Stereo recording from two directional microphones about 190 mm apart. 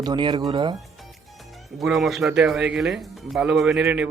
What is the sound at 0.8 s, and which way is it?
Speech, centre (ahead or behind).